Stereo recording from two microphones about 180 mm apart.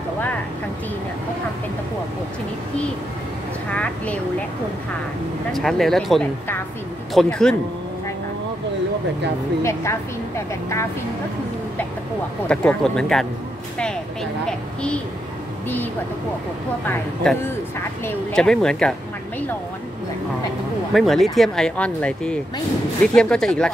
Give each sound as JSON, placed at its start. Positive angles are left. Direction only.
{"t": 3.7, "sound": "a woman's voice", "side_deg": 5}
{"t": 5.5, "sound": "speech", "side_deg": 0}
{"t": 9.6, "sound": "a woman's voice", "side_deg": 15}
{"t": 12.4, "sound": "speech", "side_deg": 5}
{"t": 16.8, "sound": "a woman's voice", "side_deg": 5}
{"t": 20.9, "sound": "speech", "side_deg": 0}